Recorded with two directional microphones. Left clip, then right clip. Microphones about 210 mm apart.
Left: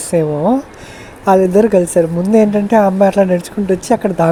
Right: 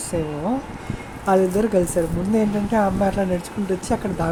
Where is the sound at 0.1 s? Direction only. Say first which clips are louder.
Left 11 dB; 40° left (ahead or behind).